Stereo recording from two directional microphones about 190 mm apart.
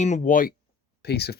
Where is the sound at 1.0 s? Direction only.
55° left (ahead or behind).